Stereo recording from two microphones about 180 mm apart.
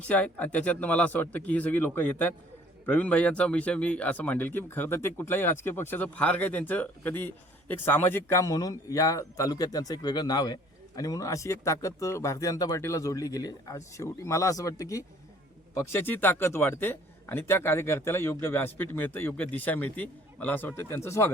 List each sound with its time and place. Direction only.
0.0 s speech: 10° left (ahead or behind)